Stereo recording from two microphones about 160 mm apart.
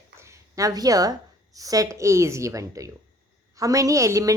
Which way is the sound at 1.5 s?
20° right (ahead or behind).